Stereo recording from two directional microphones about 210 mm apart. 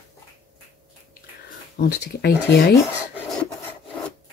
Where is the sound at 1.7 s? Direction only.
50° left (ahead or behind).